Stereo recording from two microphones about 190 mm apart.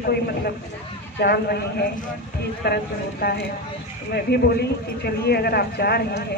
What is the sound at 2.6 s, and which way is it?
Speech, 55° left (ahead or behind).